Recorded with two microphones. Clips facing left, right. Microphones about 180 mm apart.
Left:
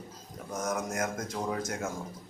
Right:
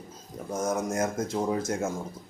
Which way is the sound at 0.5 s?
30° right (ahead or behind).